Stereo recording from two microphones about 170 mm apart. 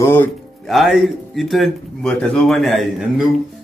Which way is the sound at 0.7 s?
Centre (ahead or behind).